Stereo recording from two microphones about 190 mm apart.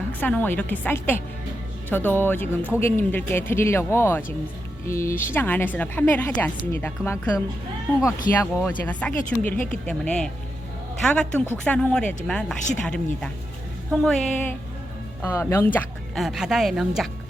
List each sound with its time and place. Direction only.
0.2 s a woman's voice: 10° left (ahead or behind)
8.3 s speech: 50° left (ahead or behind)
8.6 s a woman's voice: 5° left (ahead or behind)
16.1 s speech: centre (ahead or behind)